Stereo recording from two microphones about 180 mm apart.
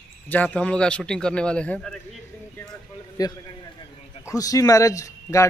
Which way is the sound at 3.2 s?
20° left (ahead or behind).